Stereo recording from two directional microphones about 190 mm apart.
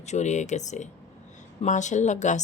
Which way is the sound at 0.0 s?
35° left (ahead or behind).